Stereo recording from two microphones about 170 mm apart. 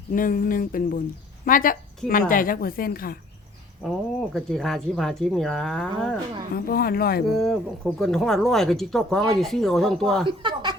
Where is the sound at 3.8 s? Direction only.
Centre (ahead or behind).